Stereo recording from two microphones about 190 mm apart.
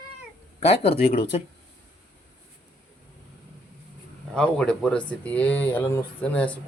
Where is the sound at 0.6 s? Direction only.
30° left (ahead or behind).